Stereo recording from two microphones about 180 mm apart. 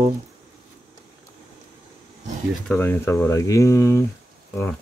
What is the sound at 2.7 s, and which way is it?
Speech, 10° left (ahead or behind).